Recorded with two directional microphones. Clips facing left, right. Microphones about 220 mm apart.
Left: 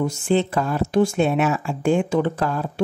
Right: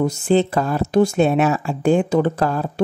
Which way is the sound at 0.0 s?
40° right (ahead or behind).